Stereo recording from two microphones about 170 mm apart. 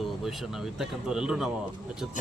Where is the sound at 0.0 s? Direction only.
Centre (ahead or behind).